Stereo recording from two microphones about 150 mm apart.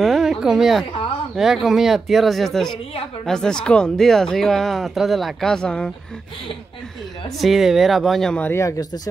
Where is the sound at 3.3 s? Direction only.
5° left (ahead or behind).